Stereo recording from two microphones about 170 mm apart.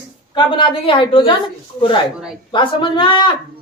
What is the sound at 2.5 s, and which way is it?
Speech, 30° left (ahead or behind).